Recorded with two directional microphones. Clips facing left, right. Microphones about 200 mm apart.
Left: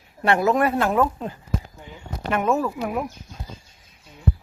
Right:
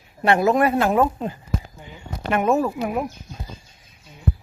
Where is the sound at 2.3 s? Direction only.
15° right (ahead or behind).